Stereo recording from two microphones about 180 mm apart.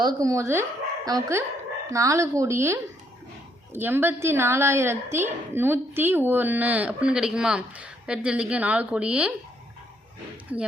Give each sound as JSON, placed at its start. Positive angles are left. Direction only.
{"t": 0.0, "sound": "a woman's voice", "side_deg": -20}
{"t": 10.5, "sound": "a woman's voice", "side_deg": -10}